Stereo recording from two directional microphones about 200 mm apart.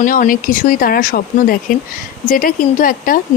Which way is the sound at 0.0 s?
40° left (ahead or behind).